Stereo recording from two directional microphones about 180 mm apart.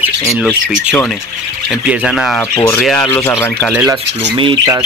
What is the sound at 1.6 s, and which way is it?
Speech, 5° right (ahead or behind).